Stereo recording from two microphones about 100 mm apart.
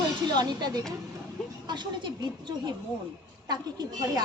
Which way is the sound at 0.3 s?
45° right (ahead or behind).